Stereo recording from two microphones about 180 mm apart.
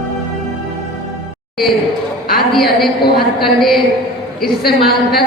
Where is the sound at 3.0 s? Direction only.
60° left (ahead or behind).